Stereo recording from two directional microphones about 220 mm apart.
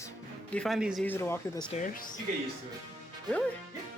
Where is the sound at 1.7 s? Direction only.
35° left (ahead or behind).